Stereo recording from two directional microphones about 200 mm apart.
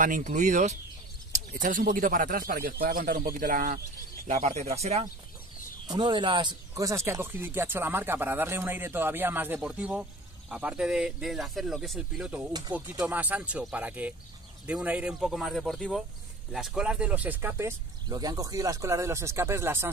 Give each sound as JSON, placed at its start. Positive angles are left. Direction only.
{"t": 0.0, "sound": "speech", "side_deg": -40}
{"t": 4.3, "sound": "speech", "side_deg": -35}